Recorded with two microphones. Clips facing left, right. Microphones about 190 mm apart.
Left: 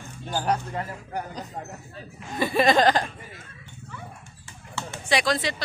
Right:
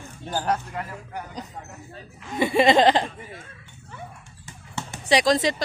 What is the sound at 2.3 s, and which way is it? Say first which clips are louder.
Speech: right 2 dB; 20° right (ahead or behind).